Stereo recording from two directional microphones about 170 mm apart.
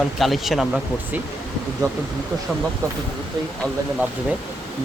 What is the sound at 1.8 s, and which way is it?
Speech, 20° right (ahead or behind).